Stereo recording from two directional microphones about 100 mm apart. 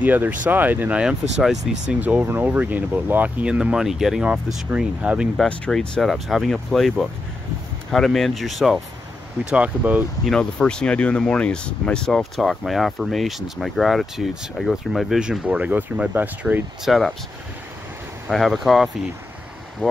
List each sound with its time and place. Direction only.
0.0 s speech: 15° right (ahead or behind)
5.5 s speech: 5° left (ahead or behind)
9.4 s speech: 10° right (ahead or behind)
10.2 s speech: 5° left (ahead or behind); by 16.6 s 20° right (ahead or behind)
16.8 s speech: centre (ahead or behind)
18.3 s speech: centre (ahead or behind)
19.8 s speech: 10° left (ahead or behind)